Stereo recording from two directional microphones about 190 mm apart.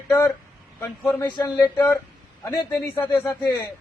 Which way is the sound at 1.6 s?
10° left (ahead or behind).